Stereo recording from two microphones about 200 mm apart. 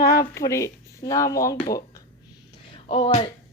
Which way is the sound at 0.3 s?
15° left (ahead or behind).